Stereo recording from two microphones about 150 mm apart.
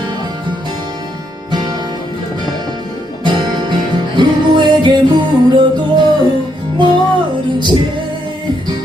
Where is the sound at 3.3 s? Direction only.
30° right (ahead or behind).